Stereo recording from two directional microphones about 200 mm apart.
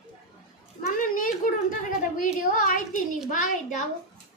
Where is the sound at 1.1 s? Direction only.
40° left (ahead or behind).